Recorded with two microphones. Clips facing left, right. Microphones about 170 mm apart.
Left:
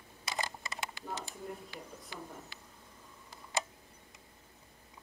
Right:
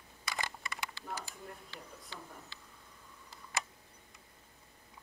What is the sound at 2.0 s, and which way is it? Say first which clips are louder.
Speech: left 3 dB; 15° left (ahead or behind).